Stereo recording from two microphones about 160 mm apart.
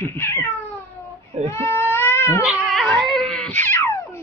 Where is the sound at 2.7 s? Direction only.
Centre (ahead or behind).